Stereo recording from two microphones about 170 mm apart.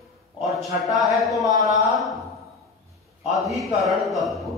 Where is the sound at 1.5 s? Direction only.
20° right (ahead or behind).